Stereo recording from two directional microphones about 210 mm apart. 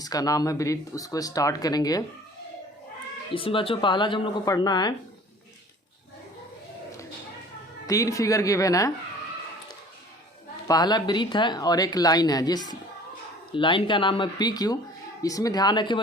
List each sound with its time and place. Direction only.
0.0 s speech: 15° left (ahead or behind)
3.3 s speech: 25° left (ahead or behind)
7.9 s speech: 15° left (ahead or behind)
10.7 s speech: 20° left (ahead or behind)